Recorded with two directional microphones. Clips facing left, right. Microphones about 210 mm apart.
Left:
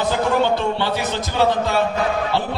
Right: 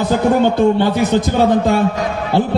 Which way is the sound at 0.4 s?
50° right (ahead or behind).